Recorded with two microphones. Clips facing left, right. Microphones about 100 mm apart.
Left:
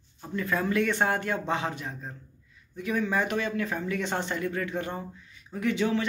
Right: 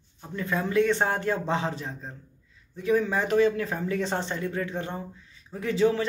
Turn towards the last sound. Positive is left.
turn(degrees=-35)  # may be behind; listen again after turning